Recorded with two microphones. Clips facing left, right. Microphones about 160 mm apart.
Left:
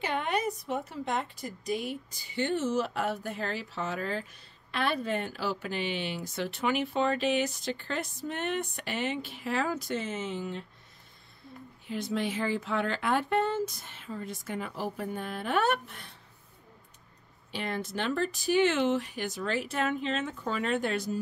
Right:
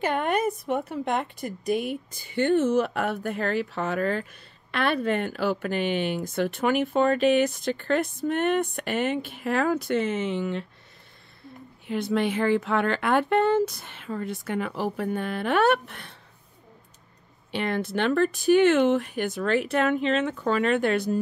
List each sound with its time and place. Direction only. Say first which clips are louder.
0.0 s a woman's voice: right 6 dB; 50° right (ahead or behind); by 10.6 s 75° right (ahead or behind)
11.9 s speech: right 6 dB; 65° right (ahead or behind)
17.5 s a woman's voice: right 7 dB; 65° right (ahead or behind)